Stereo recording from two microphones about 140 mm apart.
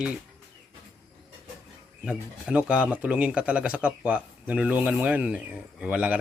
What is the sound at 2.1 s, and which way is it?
Speech, 10° right (ahead or behind).